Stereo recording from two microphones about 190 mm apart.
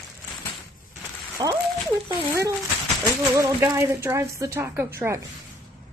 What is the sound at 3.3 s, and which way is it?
Speech, 15° right (ahead or behind).